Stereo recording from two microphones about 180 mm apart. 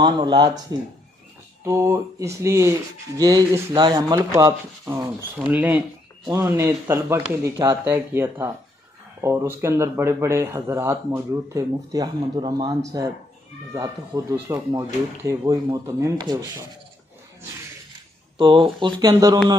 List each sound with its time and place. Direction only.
0.0 s speech: 25° right (ahead or behind)
1.6 s speech: 15° right (ahead or behind)
18.4 s speech: 25° right (ahead or behind)